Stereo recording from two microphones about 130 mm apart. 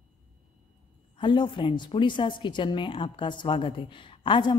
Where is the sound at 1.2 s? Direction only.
35° left (ahead or behind).